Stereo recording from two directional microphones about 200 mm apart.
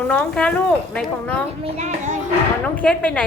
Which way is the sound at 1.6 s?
35° right (ahead or behind).